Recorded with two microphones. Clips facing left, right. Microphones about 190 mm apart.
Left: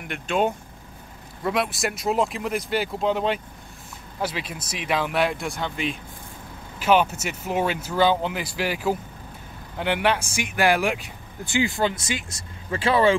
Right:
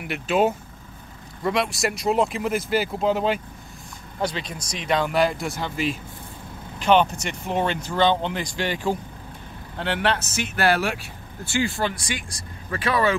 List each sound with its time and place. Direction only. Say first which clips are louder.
0.0 s speech: right 3 dB; 5° right (ahead or behind); by 13.1 s 25° left (ahead or behind)